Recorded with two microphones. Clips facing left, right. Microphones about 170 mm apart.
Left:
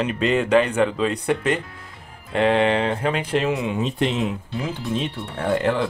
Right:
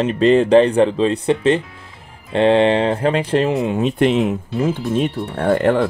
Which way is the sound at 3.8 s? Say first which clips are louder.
Right 9 dB; 60° right (ahead or behind).